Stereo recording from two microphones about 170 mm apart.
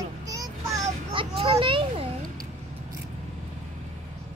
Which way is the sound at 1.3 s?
30° right (ahead or behind).